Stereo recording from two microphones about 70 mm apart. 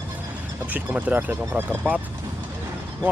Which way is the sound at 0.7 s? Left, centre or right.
Right.